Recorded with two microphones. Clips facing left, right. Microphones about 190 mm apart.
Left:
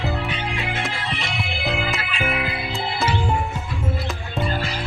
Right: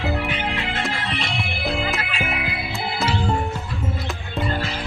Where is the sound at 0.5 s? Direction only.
20° left (ahead or behind).